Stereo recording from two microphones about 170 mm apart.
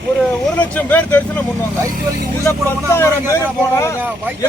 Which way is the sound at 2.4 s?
15° left (ahead or behind).